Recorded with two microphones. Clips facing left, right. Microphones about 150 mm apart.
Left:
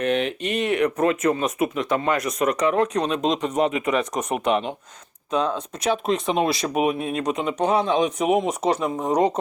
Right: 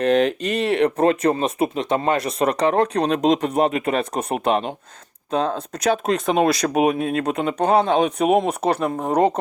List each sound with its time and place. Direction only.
0.0 s speech: 40° right (ahead or behind)